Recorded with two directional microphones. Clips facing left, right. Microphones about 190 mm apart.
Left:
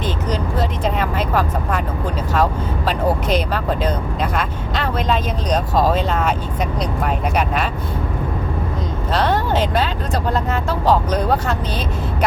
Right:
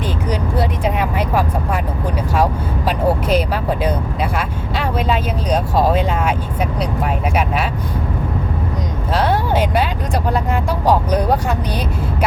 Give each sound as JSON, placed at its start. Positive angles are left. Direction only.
{"t": 0.3, "sound": "vehicle", "side_deg": -10}
{"t": 2.3, "sound": "speech", "side_deg": -10}
{"t": 9.1, "sound": "speech", "side_deg": -10}